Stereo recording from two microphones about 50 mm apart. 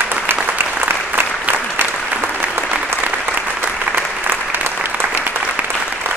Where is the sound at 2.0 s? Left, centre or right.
Right.